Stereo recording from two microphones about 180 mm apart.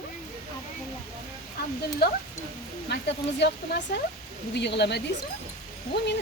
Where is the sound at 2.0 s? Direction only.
60° left (ahead or behind).